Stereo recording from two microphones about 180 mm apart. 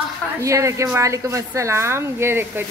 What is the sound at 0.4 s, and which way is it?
A woman's voice, 15° right (ahead or behind).